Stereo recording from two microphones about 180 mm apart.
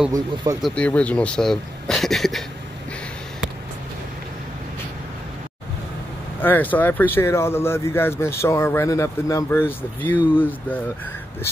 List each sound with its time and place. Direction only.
0.1 s speech: 20° right (ahead or behind)
0.6 s speech: 5° left (ahead or behind)
6.4 s speech: 10° left (ahead or behind)